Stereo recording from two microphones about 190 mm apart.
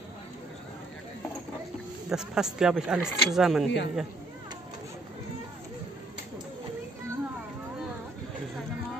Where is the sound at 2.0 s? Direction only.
5° right (ahead or behind).